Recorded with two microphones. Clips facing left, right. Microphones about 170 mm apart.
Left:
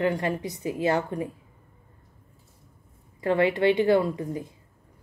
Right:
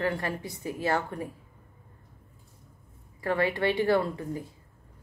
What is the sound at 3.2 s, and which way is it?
A woman's voice, 20° left (ahead or behind).